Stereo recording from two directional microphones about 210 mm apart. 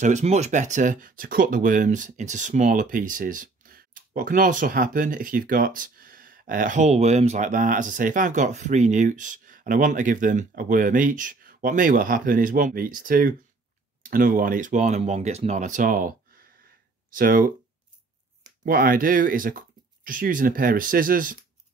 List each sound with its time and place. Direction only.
0.0 s speech: 35° right (ahead or behind)
18.7 s speech: 45° right (ahead or behind)